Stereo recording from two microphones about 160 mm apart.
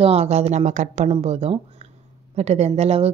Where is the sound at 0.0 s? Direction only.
40° right (ahead or behind).